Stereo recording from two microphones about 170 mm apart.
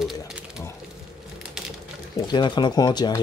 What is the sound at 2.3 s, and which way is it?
Speech, 25° left (ahead or behind).